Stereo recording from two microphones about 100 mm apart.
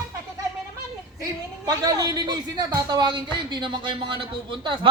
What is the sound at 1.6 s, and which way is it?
A man's voice, 40° right (ahead or behind).